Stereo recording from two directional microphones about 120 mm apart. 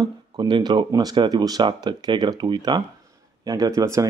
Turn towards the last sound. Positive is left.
turn(degrees=-25)  # may be behind; listen again after turning